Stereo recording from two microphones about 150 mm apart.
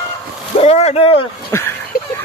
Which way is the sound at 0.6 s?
45° left (ahead or behind).